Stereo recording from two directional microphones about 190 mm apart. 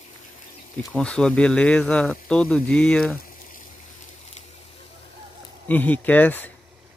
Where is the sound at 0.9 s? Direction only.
5° left (ahead or behind).